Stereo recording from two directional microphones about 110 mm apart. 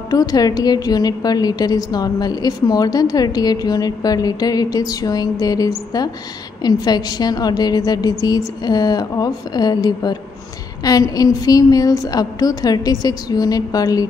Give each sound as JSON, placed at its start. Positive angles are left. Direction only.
{"t": 0.1, "sound": "a woman's voice", "side_deg": 35}